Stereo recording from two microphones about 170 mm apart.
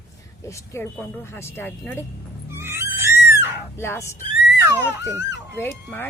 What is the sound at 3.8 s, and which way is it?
Speech, 15° left (ahead or behind).